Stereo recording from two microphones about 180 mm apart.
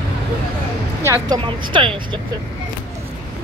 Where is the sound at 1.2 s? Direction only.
25° right (ahead or behind).